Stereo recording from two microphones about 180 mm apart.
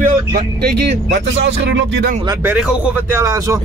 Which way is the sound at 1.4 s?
85° right.